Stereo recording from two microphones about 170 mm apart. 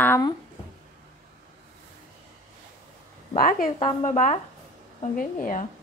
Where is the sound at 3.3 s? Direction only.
55° left (ahead or behind).